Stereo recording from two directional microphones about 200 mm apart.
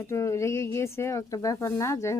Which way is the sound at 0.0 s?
15° left (ahead or behind).